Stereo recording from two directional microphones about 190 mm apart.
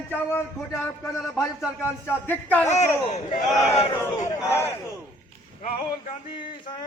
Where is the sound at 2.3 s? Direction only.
10° left (ahead or behind).